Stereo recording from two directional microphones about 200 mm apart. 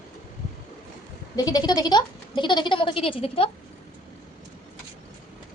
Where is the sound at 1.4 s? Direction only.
20° left (ahead or behind).